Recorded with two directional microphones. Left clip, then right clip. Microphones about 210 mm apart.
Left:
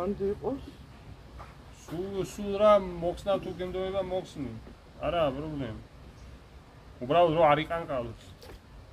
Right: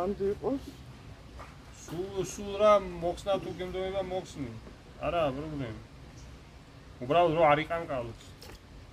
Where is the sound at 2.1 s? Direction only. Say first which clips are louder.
Left 2 dB; 10° left (ahead or behind).